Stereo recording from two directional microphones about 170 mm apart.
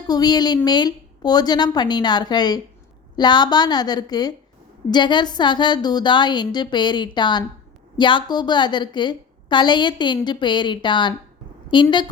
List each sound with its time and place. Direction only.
0.1 s a woman's voice: 25° left (ahead or behind)